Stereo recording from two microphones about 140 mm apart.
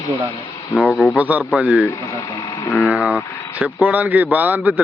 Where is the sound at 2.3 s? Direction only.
35° left (ahead or behind).